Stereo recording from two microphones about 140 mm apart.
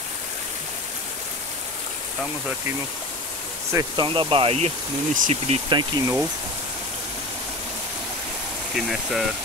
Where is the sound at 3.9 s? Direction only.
35° right (ahead or behind).